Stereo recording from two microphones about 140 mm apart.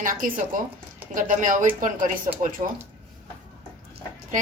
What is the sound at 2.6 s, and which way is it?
Speech, 60° right (ahead or behind).